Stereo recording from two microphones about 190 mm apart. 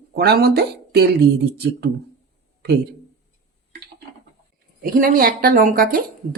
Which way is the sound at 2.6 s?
60° right (ahead or behind).